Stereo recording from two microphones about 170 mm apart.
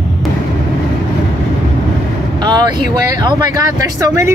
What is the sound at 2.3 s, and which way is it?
Speech, 25° right (ahead or behind).